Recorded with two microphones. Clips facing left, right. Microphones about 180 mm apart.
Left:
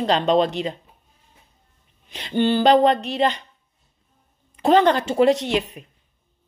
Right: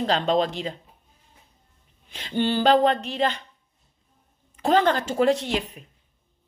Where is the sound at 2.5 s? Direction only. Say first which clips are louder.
Left 3 dB; 10° left (ahead or behind).